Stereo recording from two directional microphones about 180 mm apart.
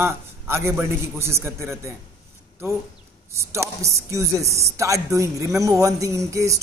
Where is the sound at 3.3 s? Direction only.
15° right (ahead or behind).